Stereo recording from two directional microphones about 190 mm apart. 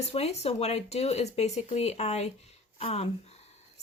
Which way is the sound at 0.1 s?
35° left (ahead or behind).